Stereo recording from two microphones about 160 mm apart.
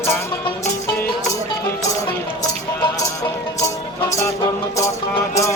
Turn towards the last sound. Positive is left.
turn(degrees=15)  # may be behind; listen again after turning